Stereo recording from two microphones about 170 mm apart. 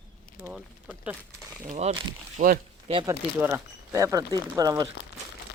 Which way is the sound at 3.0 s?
15° right (ahead or behind).